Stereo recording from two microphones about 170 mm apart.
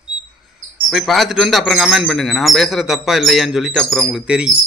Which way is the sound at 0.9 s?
Centre (ahead or behind).